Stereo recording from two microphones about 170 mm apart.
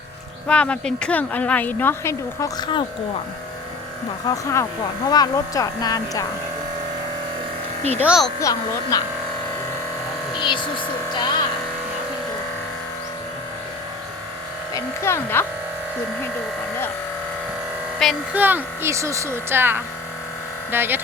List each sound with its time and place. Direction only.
0.4 s speech: 5° left (ahead or behind)
4.3 s speech: 25° left (ahead or behind)
8.0 s speech: centre (ahead or behind)
8.4 s speech: 20° left (ahead or behind)
10.3 s speech: 30° left (ahead or behind)
14.7 s speech: 15° left (ahead or behind)
18.0 s speech: centre (ahead or behind)
18.3 s speech: 10° right (ahead or behind)